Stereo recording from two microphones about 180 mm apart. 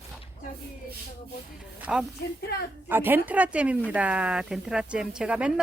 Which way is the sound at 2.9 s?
10° right (ahead or behind).